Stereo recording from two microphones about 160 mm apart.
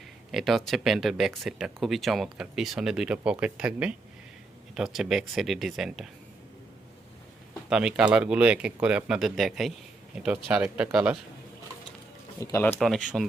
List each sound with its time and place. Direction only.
0.3 s speech: centre (ahead or behind)
7.7 s speech: 5° right (ahead or behind)
12.4 s speech: 15° left (ahead or behind)
13.1 s speech: 5° right (ahead or behind)